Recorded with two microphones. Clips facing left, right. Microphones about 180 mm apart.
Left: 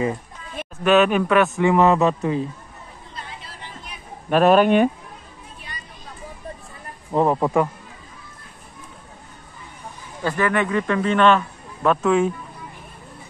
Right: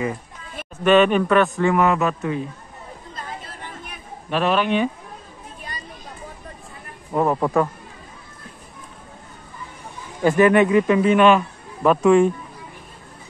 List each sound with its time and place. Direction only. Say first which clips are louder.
0.8 s speech: right 1 dB; 5° left (ahead or behind)
1.9 s speech: left 3 dB; 30° left (ahead or behind)
3.2 s chatter: right 3 dB; 50° right (ahead or behind)
4.3 s speech: left 5 dB; 45° left (ahead or behind)
7.2 s speech: left 1 dB; 15° left (ahead or behind)
10.2 s speech: right 7 dB; 20° right (ahead or behind); by 12.3 s centre (ahead or behind)